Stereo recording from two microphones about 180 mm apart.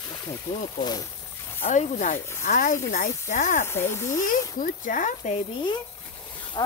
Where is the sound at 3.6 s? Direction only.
15° left (ahead or behind).